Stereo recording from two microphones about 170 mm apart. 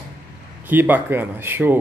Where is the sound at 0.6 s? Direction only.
10° right (ahead or behind).